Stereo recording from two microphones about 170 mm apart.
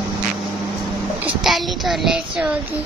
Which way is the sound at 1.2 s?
Centre (ahead or behind).